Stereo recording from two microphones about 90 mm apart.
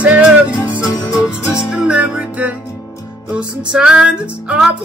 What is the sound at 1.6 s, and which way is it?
Music, 5° right (ahead or behind).